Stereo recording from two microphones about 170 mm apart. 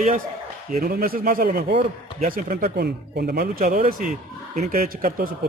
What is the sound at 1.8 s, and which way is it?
Speech, 50° right (ahead or behind).